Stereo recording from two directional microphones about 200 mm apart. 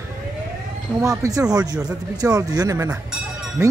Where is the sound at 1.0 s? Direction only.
15° right (ahead or behind).